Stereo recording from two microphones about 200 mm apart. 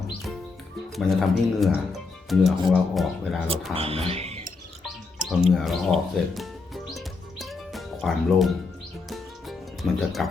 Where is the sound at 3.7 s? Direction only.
30° right (ahead or behind).